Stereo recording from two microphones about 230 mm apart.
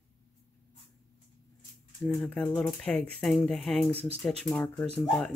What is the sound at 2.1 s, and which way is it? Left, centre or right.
Speech, centre.